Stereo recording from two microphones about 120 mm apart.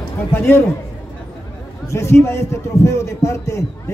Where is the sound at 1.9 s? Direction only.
25° left (ahead or behind).